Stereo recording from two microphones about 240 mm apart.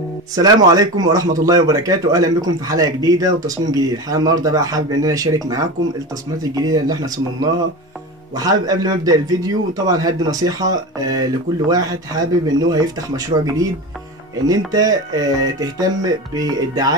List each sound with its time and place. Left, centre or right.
0.4 s a man's voice: centre
6.5 s a man's voice: centre
8.4 s a man's voice: centre